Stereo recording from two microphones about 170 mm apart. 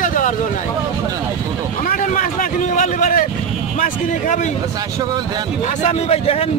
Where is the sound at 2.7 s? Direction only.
50° left (ahead or behind).